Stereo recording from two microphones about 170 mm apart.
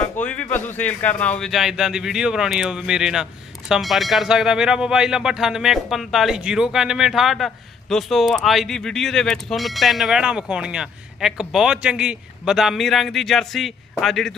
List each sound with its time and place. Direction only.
0.2 s speech: 10° left (ahead or behind)